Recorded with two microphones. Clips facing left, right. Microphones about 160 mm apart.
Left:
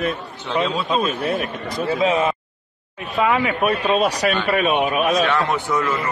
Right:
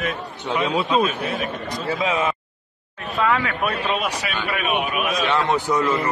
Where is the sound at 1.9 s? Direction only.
30° left (ahead or behind).